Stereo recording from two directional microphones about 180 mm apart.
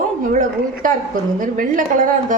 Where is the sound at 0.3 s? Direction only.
50° right (ahead or behind).